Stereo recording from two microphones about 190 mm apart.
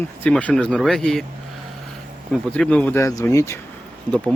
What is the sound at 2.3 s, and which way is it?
Speech, 5° left (ahead or behind).